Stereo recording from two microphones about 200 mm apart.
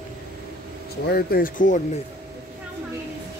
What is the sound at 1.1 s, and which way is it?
Speech, 50° left (ahead or behind).